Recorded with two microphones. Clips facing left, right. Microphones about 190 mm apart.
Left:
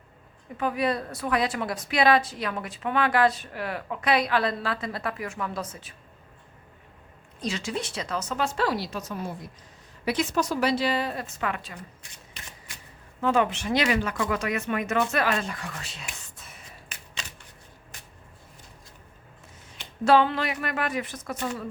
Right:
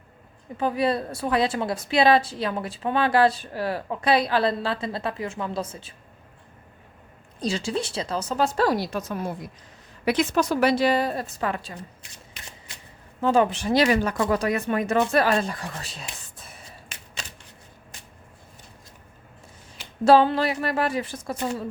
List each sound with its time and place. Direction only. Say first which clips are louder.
0.5 s a woman's voice: right 3 dB; 30° right (ahead or behind)
7.4 s speech: right 4 dB; 30° right (ahead or behind); by 9.1 s 50° right (ahead or behind)
10.1 s a woman's voice: right 4 dB; 65° right (ahead or behind); by 11.8 s 35° right (ahead or behind)
13.2 s speech: right 3 dB; 35° right (ahead or behind)
20.1 s speech: right 4 dB; 35° right (ahead or behind)